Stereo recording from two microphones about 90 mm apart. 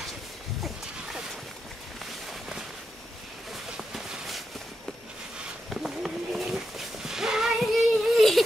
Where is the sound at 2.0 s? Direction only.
Centre (ahead or behind).